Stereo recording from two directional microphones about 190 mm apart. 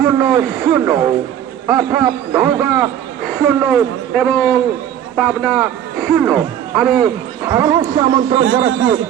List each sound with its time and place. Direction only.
0.0 s a man's voice: 10° right (ahead or behind)
7.0 s a man's voice: 15° right (ahead or behind)